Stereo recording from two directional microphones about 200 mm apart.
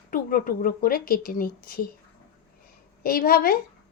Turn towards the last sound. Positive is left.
turn(degrees=45)  # may be behind; listen again after turning